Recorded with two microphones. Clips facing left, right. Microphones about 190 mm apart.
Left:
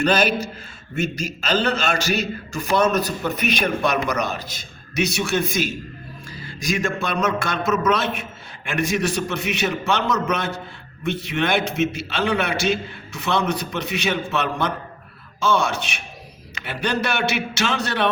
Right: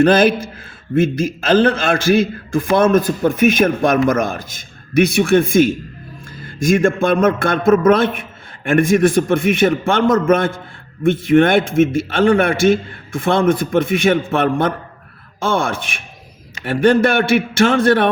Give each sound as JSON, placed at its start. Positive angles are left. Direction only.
{"t": 0.0, "sound": "a man's voice", "side_deg": -50}